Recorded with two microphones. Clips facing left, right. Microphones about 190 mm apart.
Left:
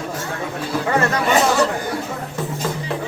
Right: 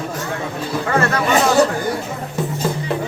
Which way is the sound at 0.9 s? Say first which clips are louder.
Right 1 dB; 15° left (ahead or behind).